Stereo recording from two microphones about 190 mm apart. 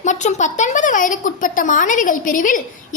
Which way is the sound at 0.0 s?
40° left (ahead or behind).